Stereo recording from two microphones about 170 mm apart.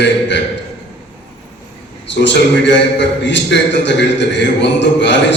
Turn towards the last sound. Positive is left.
turn(degrees=90)